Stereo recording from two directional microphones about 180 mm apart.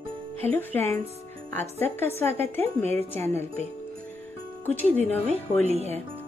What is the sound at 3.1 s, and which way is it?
Speech, 15° left (ahead or behind).